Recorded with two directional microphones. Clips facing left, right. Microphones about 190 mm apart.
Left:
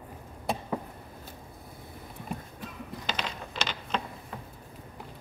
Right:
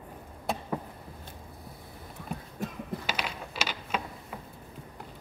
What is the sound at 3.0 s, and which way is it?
Mechanisms, 10° right (ahead or behind).